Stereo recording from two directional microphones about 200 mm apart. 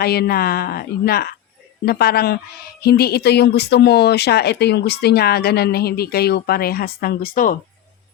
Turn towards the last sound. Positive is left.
turn(degrees=45)  # may be behind; listen again after turning